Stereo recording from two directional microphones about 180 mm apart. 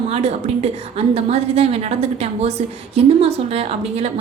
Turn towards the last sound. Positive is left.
turn(degrees=-35)  # may be behind; listen again after turning